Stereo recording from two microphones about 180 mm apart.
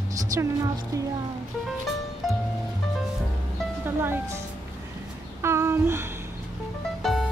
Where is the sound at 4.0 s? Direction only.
15° right (ahead or behind).